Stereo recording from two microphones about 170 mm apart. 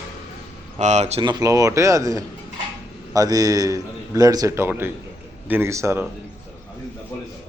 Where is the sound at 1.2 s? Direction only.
25° right (ahead or behind).